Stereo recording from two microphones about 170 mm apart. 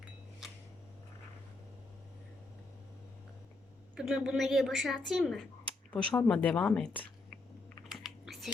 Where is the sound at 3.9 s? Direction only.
5° right (ahead or behind).